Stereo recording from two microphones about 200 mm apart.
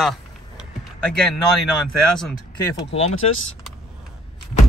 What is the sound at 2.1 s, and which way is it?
Speech, 5° left (ahead or behind).